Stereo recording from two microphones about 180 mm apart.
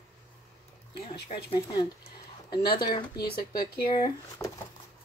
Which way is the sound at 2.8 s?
25° left (ahead or behind).